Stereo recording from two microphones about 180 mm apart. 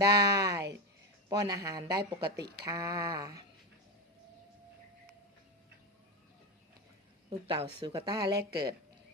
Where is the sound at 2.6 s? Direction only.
20° right (ahead or behind).